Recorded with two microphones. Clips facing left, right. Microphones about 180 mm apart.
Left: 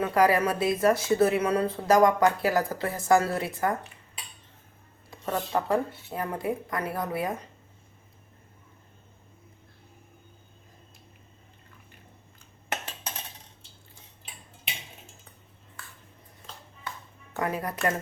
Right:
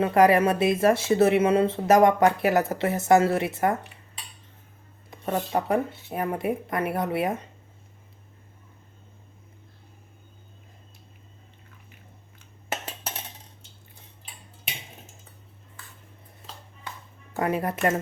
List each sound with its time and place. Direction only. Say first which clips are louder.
0.0 s speech: right 4 dB; 25° right (ahead or behind)
5.1 s speech: right 2 dB; 25° right (ahead or behind)
17.3 s speech: right 4 dB; 25° right (ahead or behind)